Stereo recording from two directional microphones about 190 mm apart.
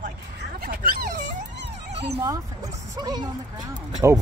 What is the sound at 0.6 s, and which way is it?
Dog, 50° right (ahead or behind).